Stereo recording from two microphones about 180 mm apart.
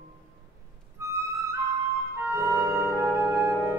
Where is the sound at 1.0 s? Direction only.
15° right (ahead or behind).